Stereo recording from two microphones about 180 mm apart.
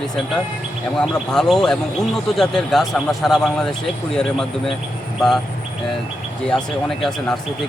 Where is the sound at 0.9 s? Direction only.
Centre (ahead or behind).